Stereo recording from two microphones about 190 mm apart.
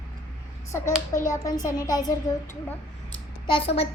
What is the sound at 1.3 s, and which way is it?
Speech, 20° left (ahead or behind).